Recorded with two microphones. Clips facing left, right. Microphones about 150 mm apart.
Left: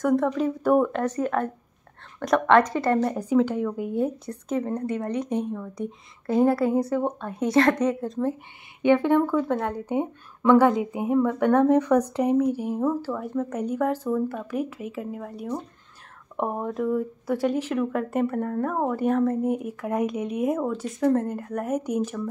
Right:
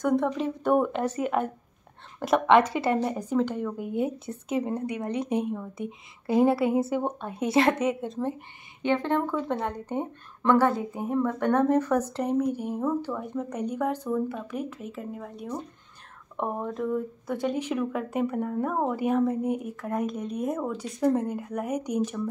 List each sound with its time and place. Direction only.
0.0 s speech: centre (ahead or behind)
1.2 s speech: 20° right (ahead or behind)
2.2 s speech: 5° right (ahead or behind)
3.2 s speech: 5° left (ahead or behind)
4.5 s a woman's voice: 10° right (ahead or behind)
5.3 s a woman's voice: 10° right (ahead or behind)
8.8 s speech: 10° left (ahead or behind)
11.8 s a woman's voice: 5° right (ahead or behind)
12.1 s speech: 10° left (ahead or behind)